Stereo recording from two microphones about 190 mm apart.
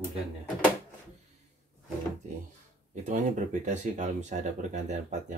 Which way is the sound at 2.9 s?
40° right (ahead or behind).